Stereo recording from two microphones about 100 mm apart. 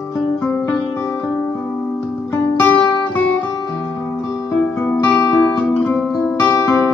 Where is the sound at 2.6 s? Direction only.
15° left (ahead or behind).